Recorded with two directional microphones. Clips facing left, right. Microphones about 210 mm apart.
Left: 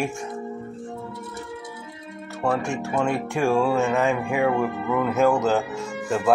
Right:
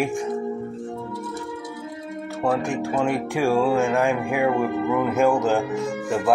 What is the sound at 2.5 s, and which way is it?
Speech, 15° right (ahead or behind).